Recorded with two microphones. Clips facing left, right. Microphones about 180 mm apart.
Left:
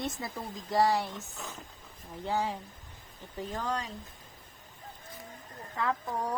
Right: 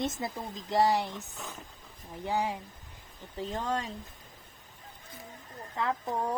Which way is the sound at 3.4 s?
25° right (ahead or behind).